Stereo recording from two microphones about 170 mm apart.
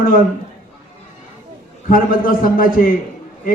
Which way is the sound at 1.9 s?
55° left (ahead or behind).